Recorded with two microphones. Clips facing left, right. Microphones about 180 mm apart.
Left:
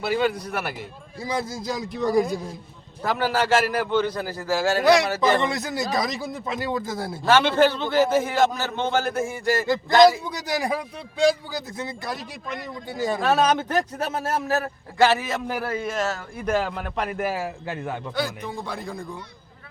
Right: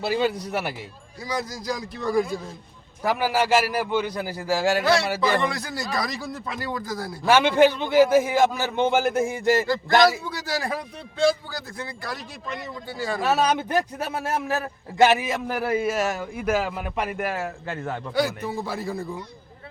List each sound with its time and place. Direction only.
1.2 s speech: 25° left (ahead or behind)
3.0 s a man's voice: 10° right (ahead or behind)
4.8 s a man's voice: 15° left (ahead or behind)
7.3 s a man's voice: 10° right (ahead or behind)
10.1 s a man's voice: 20° left (ahead or behind)
13.1 s a man's voice: 5° right (ahead or behind)
14.4 s a man's voice: 35° left (ahead or behind)
14.9 s a man's voice: 20° right (ahead or behind); by 18.1 s 10° left (ahead or behind)
18.1 s a man's voice: 10° right (ahead or behind)